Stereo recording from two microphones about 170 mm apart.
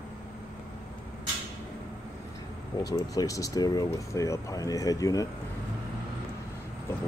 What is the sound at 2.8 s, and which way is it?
Speech, 20° left (ahead or behind).